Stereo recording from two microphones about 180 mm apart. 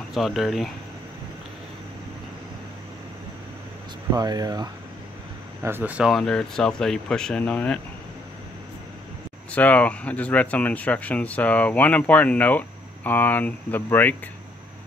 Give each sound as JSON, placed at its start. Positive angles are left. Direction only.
{"t": 0.1, "sound": "speech", "side_deg": 0}
{"t": 4.1, "sound": "speech", "side_deg": -20}
{"t": 9.5, "sound": "speech", "side_deg": 10}